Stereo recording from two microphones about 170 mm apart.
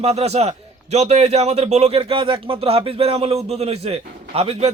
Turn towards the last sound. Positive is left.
turn(degrees=-40)  # may be behind; listen again after turning